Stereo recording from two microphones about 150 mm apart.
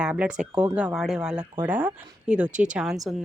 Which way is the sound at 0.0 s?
5° right (ahead or behind).